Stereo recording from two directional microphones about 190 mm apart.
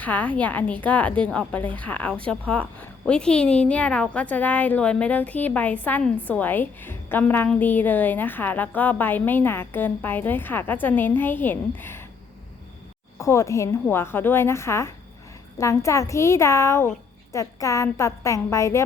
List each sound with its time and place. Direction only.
0.0 s a woman's voice: 10° left (ahead or behind)
13.1 s a woman's voice: 15° left (ahead or behind)